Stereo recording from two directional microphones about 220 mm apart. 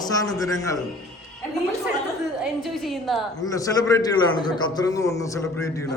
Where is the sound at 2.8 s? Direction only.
Centre (ahead or behind).